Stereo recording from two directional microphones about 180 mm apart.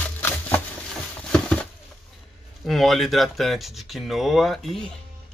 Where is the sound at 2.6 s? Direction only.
Centre (ahead or behind).